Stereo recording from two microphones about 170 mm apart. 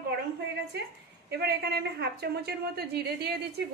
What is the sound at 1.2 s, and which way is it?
A woman's voice, 75° right (ahead or behind).